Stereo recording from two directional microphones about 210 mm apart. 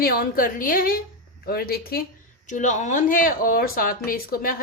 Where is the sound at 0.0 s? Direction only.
45° left (ahead or behind).